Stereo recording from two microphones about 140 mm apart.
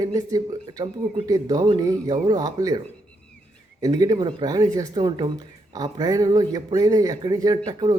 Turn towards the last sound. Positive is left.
turn(degrees=-30)  # may be behind; listen again after turning